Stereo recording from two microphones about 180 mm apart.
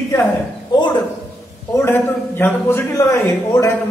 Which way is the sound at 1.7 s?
10° left (ahead or behind).